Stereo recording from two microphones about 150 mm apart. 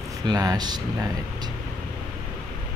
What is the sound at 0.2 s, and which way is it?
Speech, 25° right (ahead or behind).